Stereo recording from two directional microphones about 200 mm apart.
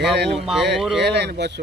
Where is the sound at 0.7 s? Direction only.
Centre (ahead or behind).